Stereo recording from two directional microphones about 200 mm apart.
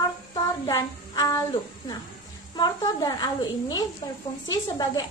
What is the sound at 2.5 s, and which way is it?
A woman's voice, 20° left (ahead or behind).